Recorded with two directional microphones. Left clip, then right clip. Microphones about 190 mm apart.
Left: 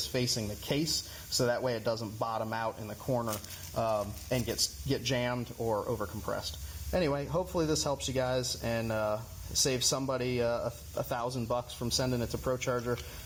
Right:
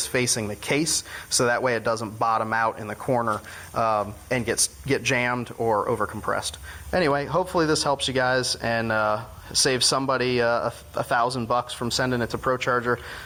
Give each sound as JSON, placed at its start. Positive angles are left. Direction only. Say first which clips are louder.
{"t": 0.1, "sound": "speech", "louder": "right 8 dB", "side_deg": -15}